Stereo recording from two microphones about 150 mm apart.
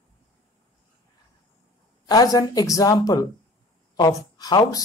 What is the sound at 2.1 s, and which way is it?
Speech, 25° left (ahead or behind).